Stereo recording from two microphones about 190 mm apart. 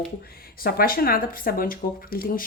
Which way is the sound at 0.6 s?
50° left (ahead or behind).